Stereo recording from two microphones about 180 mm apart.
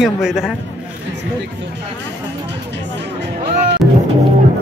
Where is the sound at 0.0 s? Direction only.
5° right (ahead or behind).